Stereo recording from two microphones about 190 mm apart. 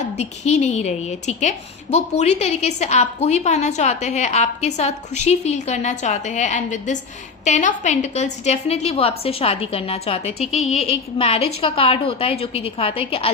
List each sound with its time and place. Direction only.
0.0 s a woman's voice: 35° left (ahead or behind)